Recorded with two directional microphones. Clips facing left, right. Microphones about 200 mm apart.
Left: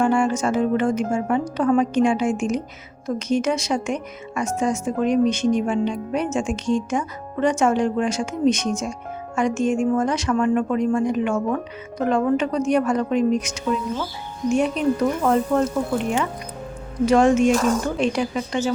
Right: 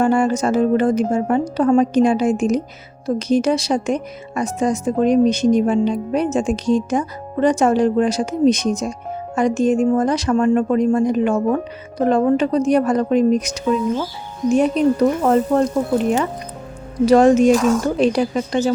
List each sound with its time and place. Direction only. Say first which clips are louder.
0.0 s speech: right 3 dB; 40° right (ahead or behind)
17.1 s speech: right 4 dB; 35° right (ahead or behind)
17.5 s speech: right 4 dB; centre (ahead or behind)
17.8 s speech: right 5 dB; 35° right (ahead or behind)